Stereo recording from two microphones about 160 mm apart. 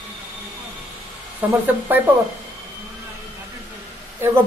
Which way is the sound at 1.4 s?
10° right (ahead or behind).